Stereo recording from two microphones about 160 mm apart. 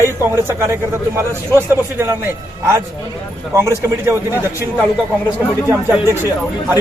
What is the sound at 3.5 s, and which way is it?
Speech, 15° right (ahead or behind).